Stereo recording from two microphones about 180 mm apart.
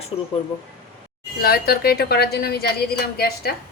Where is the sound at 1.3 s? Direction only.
60° left (ahead or behind).